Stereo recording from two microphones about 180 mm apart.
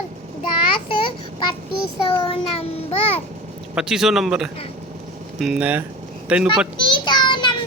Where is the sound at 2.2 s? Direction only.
35° left (ahead or behind).